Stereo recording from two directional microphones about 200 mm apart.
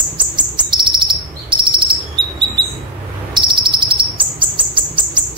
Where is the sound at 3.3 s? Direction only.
25° right (ahead or behind).